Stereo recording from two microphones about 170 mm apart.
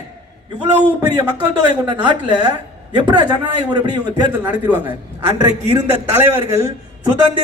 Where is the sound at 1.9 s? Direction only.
25° right (ahead or behind).